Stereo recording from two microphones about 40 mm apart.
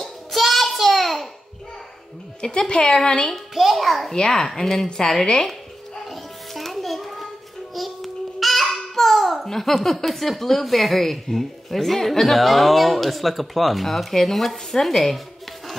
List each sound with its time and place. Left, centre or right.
0.0 s music: centre
2.4 s a woman's voice: centre
3.5 s a child's voice: centre
4.1 s a woman's voice: centre
6.0 s music: centre
7.7 s a child's voice: centre